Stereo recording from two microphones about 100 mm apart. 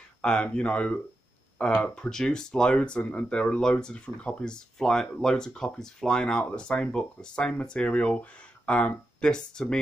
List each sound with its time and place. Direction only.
0.2 s speech: 10° left (ahead or behind)